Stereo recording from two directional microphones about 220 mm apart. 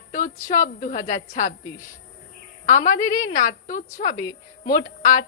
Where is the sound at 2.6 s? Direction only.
35° left (ahead or behind).